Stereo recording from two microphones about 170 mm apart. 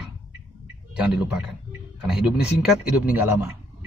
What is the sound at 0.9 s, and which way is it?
A man's voice, 5° right (ahead or behind).